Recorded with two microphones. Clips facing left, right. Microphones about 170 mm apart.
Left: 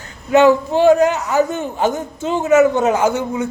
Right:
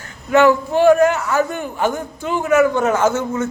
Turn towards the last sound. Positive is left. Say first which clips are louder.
# even
turn(degrees=15)  # may be behind; listen again after turning